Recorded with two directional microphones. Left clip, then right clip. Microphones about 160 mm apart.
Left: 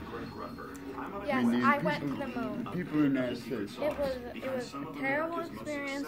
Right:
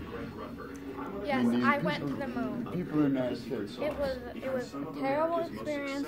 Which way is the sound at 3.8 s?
10° left (ahead or behind).